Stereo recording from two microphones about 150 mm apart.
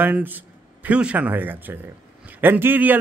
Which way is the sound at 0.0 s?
10° right (ahead or behind).